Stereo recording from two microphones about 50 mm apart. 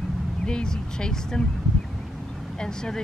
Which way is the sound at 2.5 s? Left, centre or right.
Centre.